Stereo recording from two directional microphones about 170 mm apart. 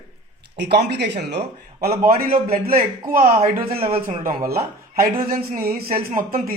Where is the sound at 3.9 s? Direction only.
50° right (ahead or behind).